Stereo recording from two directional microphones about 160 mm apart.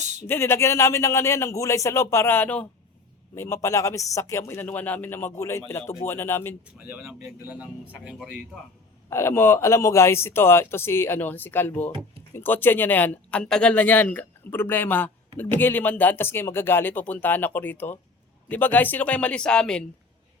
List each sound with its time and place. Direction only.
0.0 s a sound: 45° right (ahead or behind)
0.3 s speech: 15° left (ahead or behind)
6.7 s speech: 10° right (ahead or behind)
9.0 s speech: 15° left (ahead or behind)